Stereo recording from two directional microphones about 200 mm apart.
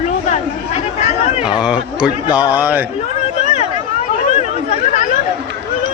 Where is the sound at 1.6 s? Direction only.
5° right (ahead or behind).